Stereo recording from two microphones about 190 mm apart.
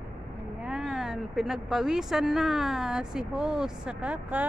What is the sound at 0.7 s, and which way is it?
Speech, 5° right (ahead or behind).